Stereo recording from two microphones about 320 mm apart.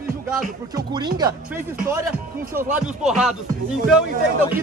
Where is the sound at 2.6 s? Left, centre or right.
Centre.